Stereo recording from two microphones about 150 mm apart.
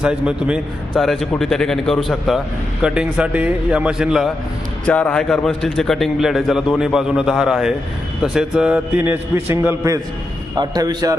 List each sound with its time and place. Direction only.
0.0 s a man's voice: 5° right (ahead or behind)
4.9 s a man's voice: 10° left (ahead or behind); by 11.2 s 25° right (ahead or behind)